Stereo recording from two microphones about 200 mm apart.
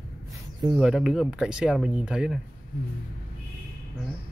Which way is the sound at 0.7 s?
5° right (ahead or behind).